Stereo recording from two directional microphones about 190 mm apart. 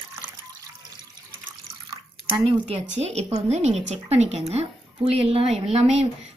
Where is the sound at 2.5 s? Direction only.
35° right (ahead or behind).